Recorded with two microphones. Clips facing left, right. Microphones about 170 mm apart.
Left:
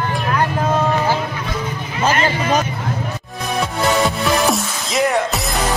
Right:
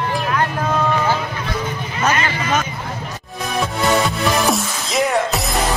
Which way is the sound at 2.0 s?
35° left (ahead or behind).